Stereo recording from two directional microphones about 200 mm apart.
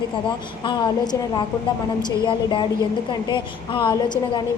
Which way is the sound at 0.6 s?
25° left (ahead or behind).